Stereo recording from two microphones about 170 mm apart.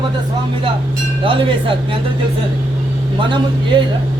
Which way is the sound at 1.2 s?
30° right (ahead or behind).